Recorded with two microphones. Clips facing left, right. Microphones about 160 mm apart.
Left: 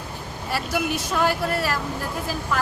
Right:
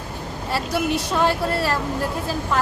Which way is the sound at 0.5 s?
30° right (ahead or behind).